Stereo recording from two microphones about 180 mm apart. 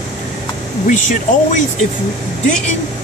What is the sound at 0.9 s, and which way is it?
Speech, 45° left (ahead or behind).